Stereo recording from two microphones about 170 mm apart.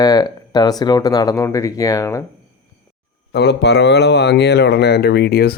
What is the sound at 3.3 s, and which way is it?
Speech, 75° left (ahead or behind).